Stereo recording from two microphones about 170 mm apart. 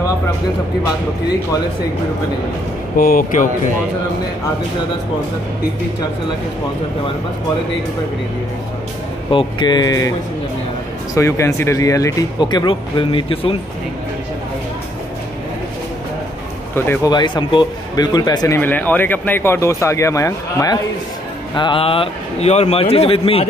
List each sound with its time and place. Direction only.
3.0 s speech: 55° left (ahead or behind)
9.3 s speech: 30° left (ahead or behind)
11.1 s speech: 15° left (ahead or behind); by 13.6 s 35° left (ahead or behind)
16.7 s speech: 15° left (ahead or behind)
17.1 s speech: 25° left (ahead or behind)
18.6 s speech: 10° left (ahead or behind)
21.5 s a man's voice: 30° left (ahead or behind)